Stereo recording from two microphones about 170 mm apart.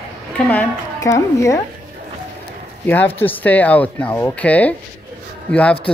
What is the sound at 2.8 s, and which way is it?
A man's voice, 10° left (ahead or behind).